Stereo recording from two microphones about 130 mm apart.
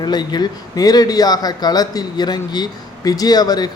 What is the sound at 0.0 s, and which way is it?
Speech, 35° left (ahead or behind).